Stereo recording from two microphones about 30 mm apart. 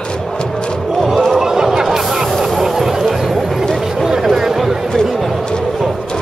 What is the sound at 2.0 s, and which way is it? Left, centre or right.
Music, centre.